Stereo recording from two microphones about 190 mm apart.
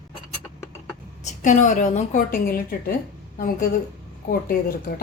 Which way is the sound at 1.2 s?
40° left (ahead or behind).